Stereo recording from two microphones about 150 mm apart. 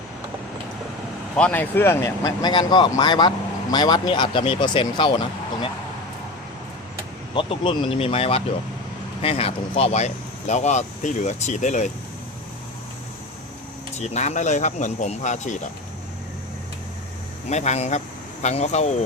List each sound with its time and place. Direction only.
1.4 s speech: 10° left (ahead or behind); by 5.1 s 35° left (ahead or behind)
7.3 s speech: 35° left (ahead or behind); by 11.9 s 50° left (ahead or behind)
14.0 s speech: 50° left (ahead or behind)
17.5 s speech: 50° left (ahead or behind)